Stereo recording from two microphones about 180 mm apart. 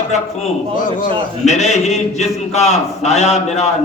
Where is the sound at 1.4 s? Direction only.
40° left (ahead or behind).